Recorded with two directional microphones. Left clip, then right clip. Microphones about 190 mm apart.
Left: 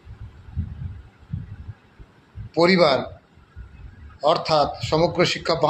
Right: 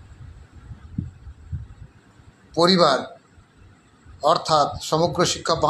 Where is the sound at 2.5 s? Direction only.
5° left (ahead or behind).